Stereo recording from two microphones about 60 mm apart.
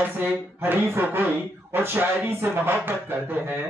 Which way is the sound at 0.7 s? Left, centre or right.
Right.